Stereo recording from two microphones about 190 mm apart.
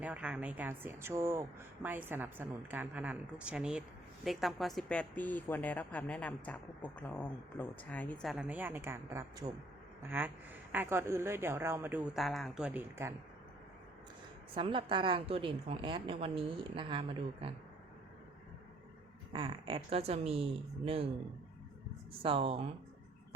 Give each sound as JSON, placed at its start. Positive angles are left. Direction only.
{"t": 0.0, "sound": "a woman's voice", "side_deg": -5}
{"t": 14.5, "sound": "a woman's voice", "side_deg": -25}
{"t": 19.3, "sound": "speech", "side_deg": -25}
{"t": 22.2, "sound": "a woman's voice", "side_deg": -30}